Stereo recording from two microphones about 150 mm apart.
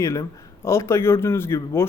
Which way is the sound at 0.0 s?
20° left (ahead or behind).